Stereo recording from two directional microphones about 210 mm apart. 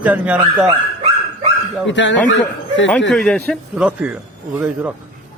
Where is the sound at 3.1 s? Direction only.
5° left (ahead or behind).